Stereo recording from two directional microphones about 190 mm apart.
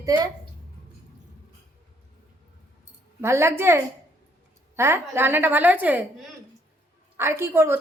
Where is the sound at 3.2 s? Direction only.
15° right (ahead or behind).